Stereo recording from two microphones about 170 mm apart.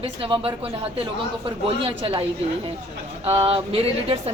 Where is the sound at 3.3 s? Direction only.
35° right (ahead or behind).